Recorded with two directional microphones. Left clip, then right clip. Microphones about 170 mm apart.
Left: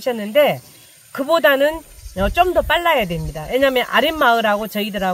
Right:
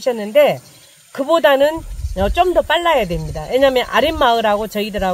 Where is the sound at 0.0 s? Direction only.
10° left (ahead or behind).